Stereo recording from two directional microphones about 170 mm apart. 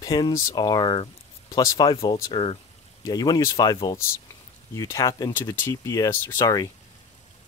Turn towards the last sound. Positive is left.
turn(degrees=20)  # may be behind; listen again after turning